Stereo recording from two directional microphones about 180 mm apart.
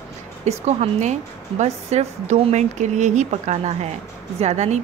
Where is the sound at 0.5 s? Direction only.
35° right (ahead or behind).